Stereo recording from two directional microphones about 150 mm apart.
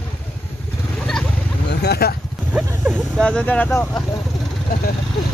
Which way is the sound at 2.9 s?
5° left (ahead or behind).